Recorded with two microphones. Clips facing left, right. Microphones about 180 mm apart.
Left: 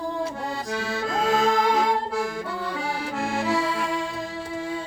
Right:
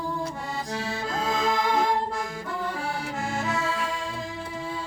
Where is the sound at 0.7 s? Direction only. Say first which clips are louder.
Left 4 dB; 70° left (ahead or behind).